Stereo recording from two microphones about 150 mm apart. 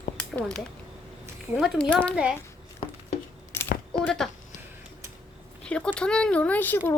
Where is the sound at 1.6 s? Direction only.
5° left (ahead or behind).